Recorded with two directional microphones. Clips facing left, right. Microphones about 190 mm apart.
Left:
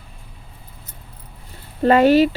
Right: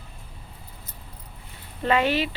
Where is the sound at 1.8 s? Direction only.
40° left (ahead or behind).